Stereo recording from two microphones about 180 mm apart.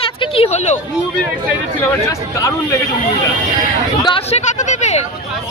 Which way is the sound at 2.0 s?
15° left (ahead or behind).